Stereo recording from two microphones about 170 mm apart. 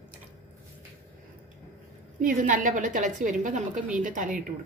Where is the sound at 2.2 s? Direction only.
50° right (ahead or behind).